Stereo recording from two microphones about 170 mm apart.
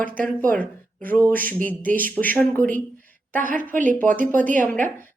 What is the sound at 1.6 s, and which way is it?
Speech, 55° right (ahead or behind).